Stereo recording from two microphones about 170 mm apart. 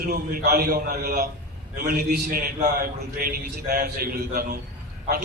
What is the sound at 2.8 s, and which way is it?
A man's voice, 65° right (ahead or behind).